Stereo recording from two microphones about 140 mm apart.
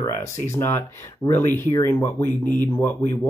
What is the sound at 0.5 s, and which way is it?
Speech, 15° left (ahead or behind).